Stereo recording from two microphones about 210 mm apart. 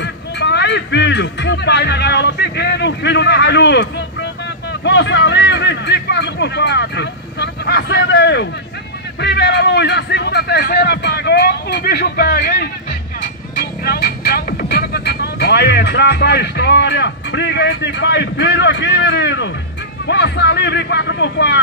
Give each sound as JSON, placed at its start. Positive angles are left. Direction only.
{"t": 0.0, "sound": "speech", "side_deg": 55}